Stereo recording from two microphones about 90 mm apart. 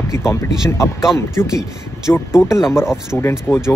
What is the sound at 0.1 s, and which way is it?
Speech, 30° left (ahead or behind).